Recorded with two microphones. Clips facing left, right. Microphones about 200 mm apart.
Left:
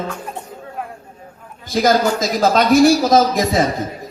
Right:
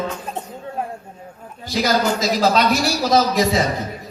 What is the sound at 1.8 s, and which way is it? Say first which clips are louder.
A man's voice: left 3 dB; 50° left (ahead or behind).